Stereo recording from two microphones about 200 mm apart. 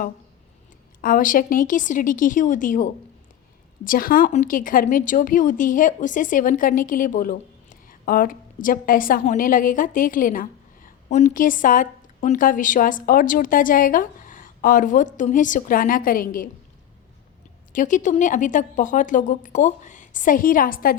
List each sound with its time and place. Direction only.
1.0 s a woman's voice: 45° left (ahead or behind)
17.7 s a woman's voice: 40° left (ahead or behind)